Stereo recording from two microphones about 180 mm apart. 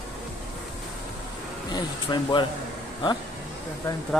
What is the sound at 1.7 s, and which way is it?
Speech, 25° left (ahead or behind).